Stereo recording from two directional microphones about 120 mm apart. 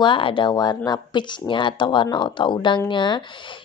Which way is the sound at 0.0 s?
45° left (ahead or behind).